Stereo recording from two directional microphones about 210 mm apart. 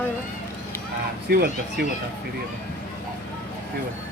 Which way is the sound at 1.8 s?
50° right (ahead or behind).